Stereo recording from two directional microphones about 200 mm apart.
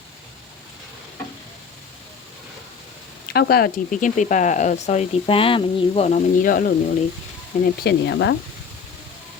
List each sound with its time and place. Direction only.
3.3 s speech: 50° left (ahead or behind)
7.6 s speech: 60° left (ahead or behind)